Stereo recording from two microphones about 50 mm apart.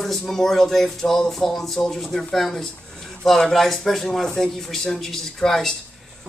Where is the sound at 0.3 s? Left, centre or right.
Centre.